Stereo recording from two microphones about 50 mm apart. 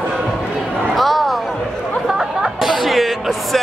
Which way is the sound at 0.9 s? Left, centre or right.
Centre.